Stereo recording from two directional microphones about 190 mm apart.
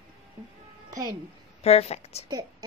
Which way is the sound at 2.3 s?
20° right (ahead or behind).